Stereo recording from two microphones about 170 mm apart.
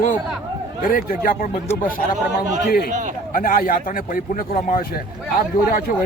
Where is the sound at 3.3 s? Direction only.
55° left (ahead or behind).